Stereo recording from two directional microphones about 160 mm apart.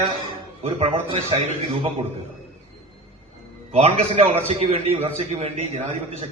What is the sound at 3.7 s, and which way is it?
A man's voice, 40° right (ahead or behind).